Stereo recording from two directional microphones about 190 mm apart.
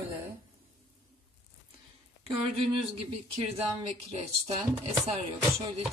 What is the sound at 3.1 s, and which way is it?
Speech, 35° right (ahead or behind).